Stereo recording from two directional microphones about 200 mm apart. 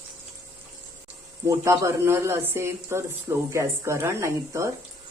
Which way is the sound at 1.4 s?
15° right (ahead or behind).